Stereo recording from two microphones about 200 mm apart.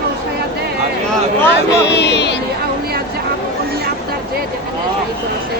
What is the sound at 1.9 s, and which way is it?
Music, 60° left (ahead or behind).